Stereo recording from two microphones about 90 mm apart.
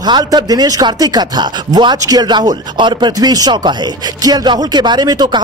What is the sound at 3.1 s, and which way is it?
Speech, 45° right (ahead or behind).